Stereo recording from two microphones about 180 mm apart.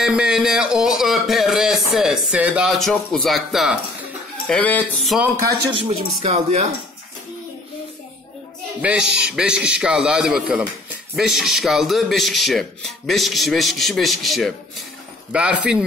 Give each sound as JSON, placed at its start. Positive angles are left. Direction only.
{"t": 0.0, "sound": "speech", "side_deg": -5}
{"t": 5.4, "sound": "speech", "side_deg": -15}
{"t": 5.9, "sound": "speech", "side_deg": -35}
{"t": 8.8, "sound": "a man's voice", "side_deg": -5}